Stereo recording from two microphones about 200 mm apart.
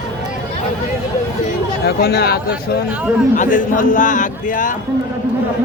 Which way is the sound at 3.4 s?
40° left (ahead or behind).